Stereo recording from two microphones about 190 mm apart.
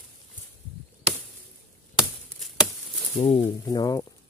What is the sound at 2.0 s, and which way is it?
Chop, centre (ahead or behind).